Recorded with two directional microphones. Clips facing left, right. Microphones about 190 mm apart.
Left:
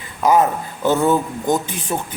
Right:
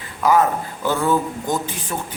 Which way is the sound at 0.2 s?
20° left (ahead or behind).